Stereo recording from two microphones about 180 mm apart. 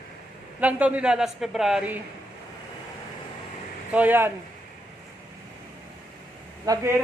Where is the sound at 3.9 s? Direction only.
10° right (ahead or behind).